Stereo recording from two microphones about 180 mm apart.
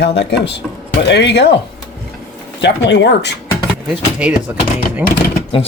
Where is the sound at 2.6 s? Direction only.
75° left (ahead or behind).